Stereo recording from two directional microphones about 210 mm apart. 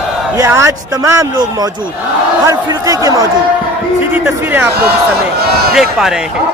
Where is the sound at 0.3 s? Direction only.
15° right (ahead or behind).